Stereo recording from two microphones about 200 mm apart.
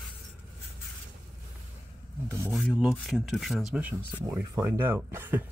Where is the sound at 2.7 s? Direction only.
Centre (ahead or behind).